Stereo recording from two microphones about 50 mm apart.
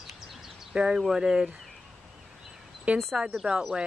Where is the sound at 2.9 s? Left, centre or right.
Right.